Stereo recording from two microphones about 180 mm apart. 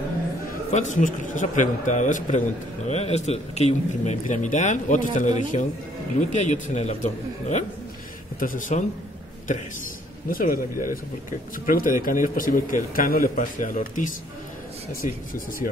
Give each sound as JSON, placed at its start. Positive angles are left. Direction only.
{"t": 0.7, "sound": "a man's voice", "side_deg": 40}